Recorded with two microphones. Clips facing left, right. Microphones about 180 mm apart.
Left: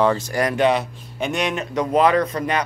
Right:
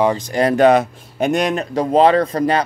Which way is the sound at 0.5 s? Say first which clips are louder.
Right 8 dB; 45° right (ahead or behind).